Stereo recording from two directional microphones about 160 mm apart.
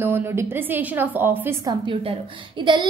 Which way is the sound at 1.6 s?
30° right (ahead or behind).